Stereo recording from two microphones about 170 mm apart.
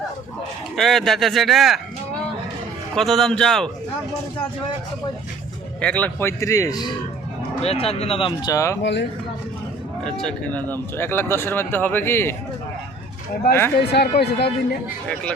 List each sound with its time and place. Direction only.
0.8 s speech: centre (ahead or behind)
2.9 s speech: centre (ahead or behind)
5.8 s speech: 10° left (ahead or behind)
7.6 s speech: 35° left (ahead or behind); by 8.8 s 20° left (ahead or behind)
8.8 s speech: 90° left
10.0 s speech: 5° left (ahead or behind)
13.7 s speech: 75° left (ahead or behind)